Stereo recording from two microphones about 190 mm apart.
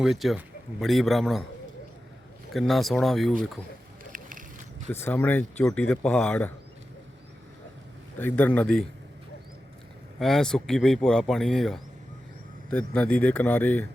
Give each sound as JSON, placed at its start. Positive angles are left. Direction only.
{"t": 0.0, "sound": "a man's voice", "side_deg": 0}
{"t": 2.5, "sound": "a man's voice", "side_deg": 0}
{"t": 4.1, "sound": "a sound", "side_deg": -45}
{"t": 4.9, "sound": "speech", "side_deg": 10}
{"t": 8.2, "sound": "speech", "side_deg": 10}
{"t": 10.2, "sound": "a man's voice", "side_deg": 0}